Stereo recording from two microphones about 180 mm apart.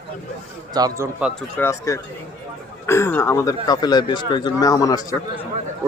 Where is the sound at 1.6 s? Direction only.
15° left (ahead or behind).